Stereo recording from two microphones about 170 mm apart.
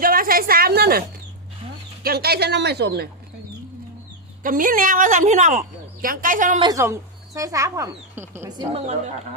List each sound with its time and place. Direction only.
0.0 s a woman's voice: 55° right (ahead or behind)
2.0 s speech: 65° right (ahead or behind)
4.4 s a woman's voice: 55° right (ahead or behind)
6.6 s speech: 20° right (ahead or behind)